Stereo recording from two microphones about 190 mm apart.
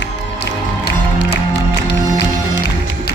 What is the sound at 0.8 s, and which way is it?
Music, 60° left (ahead or behind).